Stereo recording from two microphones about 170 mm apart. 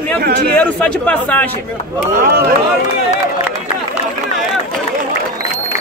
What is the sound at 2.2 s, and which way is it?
Speech, 60° right (ahead or behind).